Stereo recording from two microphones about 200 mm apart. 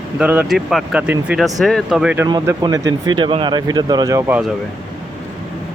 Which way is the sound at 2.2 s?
20° right (ahead or behind).